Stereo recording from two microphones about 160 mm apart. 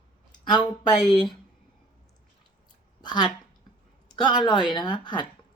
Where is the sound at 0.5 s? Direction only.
30° left (ahead or behind).